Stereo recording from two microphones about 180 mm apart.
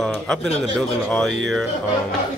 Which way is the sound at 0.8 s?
5° left (ahead or behind).